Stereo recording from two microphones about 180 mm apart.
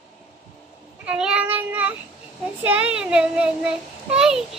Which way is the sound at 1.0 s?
5° right (ahead or behind).